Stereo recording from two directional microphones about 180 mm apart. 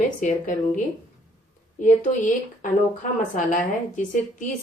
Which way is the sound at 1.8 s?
45° left (ahead or behind).